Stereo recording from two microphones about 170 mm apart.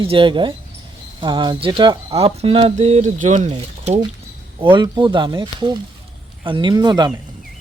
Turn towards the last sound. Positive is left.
turn(degrees=-25)  # may be behind; listen again after turning